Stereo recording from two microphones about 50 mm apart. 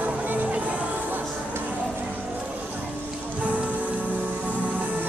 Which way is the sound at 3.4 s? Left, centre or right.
Right.